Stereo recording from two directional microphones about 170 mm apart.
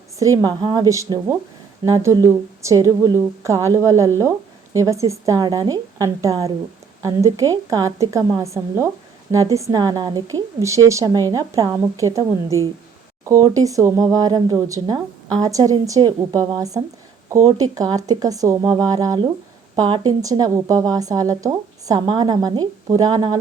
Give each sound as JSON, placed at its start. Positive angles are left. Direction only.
{"t": 0.2, "sound": "a woman's voice", "side_deg": -20}